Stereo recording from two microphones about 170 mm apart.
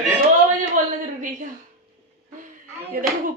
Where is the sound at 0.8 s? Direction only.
50° right (ahead or behind).